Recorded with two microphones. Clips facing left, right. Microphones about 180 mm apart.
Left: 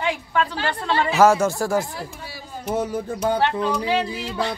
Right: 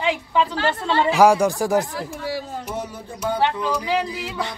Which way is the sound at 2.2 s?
80° right.